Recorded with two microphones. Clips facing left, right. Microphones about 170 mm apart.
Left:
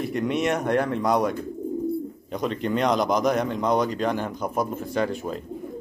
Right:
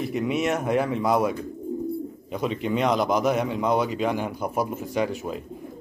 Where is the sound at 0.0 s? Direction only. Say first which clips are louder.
Even; 5° right (ahead or behind).